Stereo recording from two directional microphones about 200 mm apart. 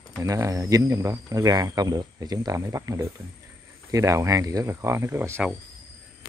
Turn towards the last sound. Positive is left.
turn(degrees=-10)  # may be behind; listen again after turning